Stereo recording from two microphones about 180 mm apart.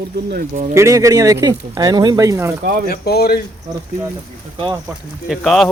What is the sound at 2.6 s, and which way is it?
Speech, 50° right (ahead or behind).